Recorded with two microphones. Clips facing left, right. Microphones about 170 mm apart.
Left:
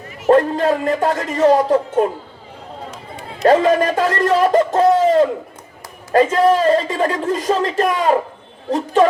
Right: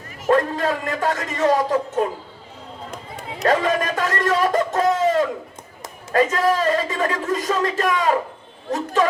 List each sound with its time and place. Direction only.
0.3 s a man's voice: 30° left (ahead or behind)
3.4 s a man's voice: 30° left (ahead or behind)